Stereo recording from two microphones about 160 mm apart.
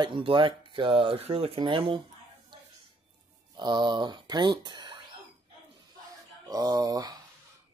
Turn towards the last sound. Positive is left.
turn(degrees=-25)  # may be behind; listen again after turning